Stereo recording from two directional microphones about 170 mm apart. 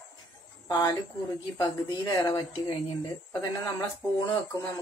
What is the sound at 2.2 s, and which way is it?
A woman's voice, 25° left (ahead or behind).